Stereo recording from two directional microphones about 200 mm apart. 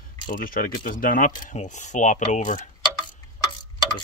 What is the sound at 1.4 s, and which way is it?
Mechanisms, 35° left (ahead or behind).